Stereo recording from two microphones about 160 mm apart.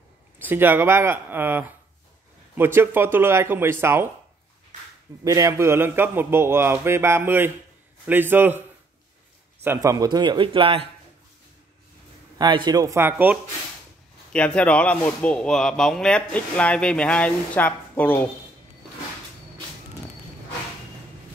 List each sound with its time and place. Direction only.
0.4 s a man's voice: 10° right (ahead or behind)
5.2 s a man's voice: 20° right (ahead or behind)
12.4 s speech: 25° right (ahead or behind)
14.3 s a man's voice: 5° left (ahead or behind)